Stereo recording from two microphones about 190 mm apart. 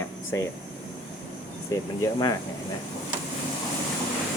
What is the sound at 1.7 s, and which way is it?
Speech, 20° left (ahead or behind).